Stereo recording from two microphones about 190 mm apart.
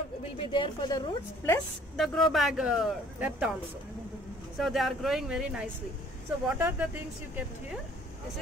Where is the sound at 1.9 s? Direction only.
Centre (ahead or behind).